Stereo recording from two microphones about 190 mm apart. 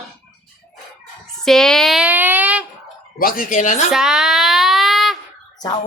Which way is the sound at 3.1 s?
50° left (ahead or behind).